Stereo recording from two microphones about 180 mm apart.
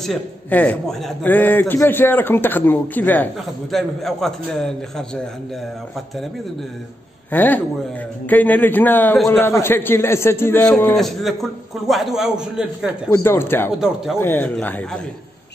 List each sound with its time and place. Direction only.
0.0 s a man's voice: 5° left (ahead or behind)
7.2 s a man's voice: 10° left (ahead or behind)
13.1 s a man's voice: 15° left (ahead or behind)